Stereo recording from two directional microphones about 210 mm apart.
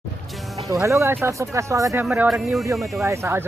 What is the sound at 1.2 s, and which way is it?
Speech, 15° right (ahead or behind).